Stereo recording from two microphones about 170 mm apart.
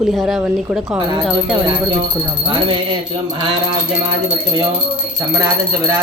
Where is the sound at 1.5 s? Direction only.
30° right (ahead or behind).